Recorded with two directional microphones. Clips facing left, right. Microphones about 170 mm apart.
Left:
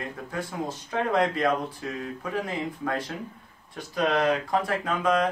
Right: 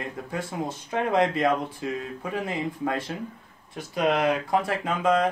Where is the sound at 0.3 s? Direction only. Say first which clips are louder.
Right 1 dB; 20° right (ahead or behind).